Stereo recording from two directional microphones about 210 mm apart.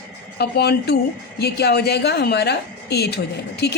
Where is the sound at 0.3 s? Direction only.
50° left (ahead or behind).